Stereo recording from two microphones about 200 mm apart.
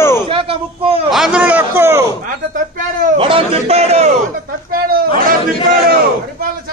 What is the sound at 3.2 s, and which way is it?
Speech, 25° right (ahead or behind).